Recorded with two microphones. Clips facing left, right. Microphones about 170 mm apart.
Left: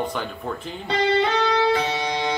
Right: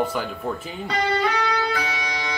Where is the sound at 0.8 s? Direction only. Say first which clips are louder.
Left 2 dB; 25° left (ahead or behind).